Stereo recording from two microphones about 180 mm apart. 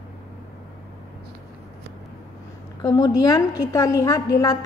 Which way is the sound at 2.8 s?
20° left (ahead or behind).